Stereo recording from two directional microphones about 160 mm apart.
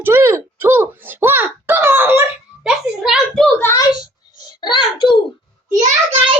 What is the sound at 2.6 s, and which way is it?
Speech, 5° right (ahead or behind).